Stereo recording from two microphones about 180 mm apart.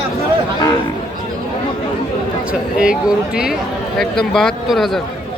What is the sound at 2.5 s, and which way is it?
Speech, 5° right (ahead or behind).